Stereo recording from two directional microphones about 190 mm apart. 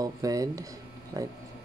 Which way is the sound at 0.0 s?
20° right (ahead or behind).